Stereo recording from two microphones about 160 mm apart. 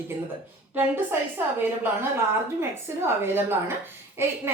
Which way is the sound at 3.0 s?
15° right (ahead or behind).